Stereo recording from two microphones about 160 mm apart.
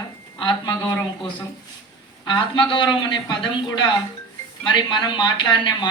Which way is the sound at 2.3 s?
30° left (ahead or behind).